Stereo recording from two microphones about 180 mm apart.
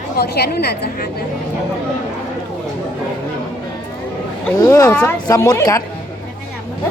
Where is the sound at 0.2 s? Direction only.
60° left (ahead or behind).